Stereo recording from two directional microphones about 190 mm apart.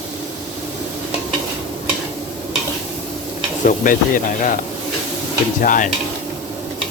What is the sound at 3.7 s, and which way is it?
Speech, 45° left (ahead or behind).